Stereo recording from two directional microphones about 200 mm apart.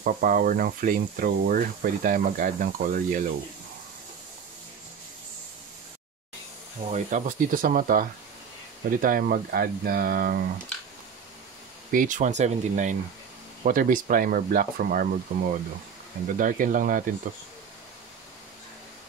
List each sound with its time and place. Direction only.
0.0 s speech: 45° right (ahead or behind)
6.9 s speech: 40° right (ahead or behind)
11.9 s speech: 40° right (ahead or behind)